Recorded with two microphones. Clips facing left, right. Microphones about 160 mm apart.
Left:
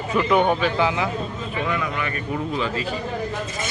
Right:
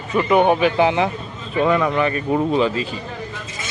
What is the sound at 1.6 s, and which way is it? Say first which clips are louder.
Speech: right 10 dB; 35° right (ahead or behind).